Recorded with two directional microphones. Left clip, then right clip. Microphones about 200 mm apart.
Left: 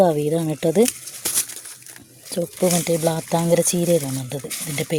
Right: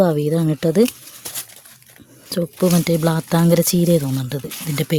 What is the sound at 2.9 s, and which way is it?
Speech, 35° right (ahead or behind).